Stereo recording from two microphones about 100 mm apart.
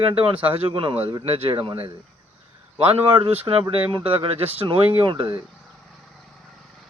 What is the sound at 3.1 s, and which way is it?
Speech, 75° right (ahead or behind).